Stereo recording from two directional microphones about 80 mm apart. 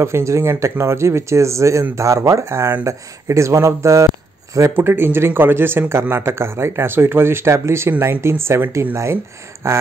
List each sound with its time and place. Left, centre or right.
0.0 s speech: right
4.7 s speech: right